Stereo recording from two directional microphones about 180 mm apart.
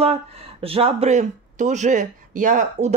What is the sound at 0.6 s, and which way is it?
A woman's voice, 30° right (ahead or behind).